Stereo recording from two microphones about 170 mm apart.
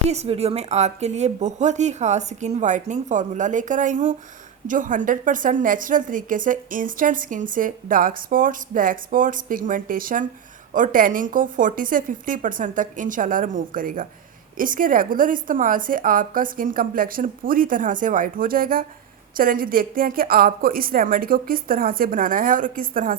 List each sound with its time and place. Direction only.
0.1 s a woman's voice: 40° right (ahead or behind); by 23.1 s 55° right (ahead or behind)